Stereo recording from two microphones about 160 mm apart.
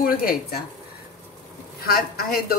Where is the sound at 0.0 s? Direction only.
65° left (ahead or behind).